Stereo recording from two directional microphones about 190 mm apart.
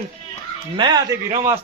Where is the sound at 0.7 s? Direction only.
20° right (ahead or behind).